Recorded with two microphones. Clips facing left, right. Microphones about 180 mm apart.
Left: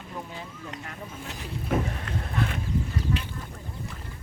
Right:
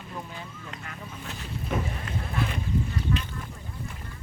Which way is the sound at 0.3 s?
25° left (ahead or behind).